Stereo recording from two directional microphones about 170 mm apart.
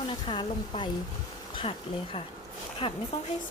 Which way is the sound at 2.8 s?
30° left (ahead or behind).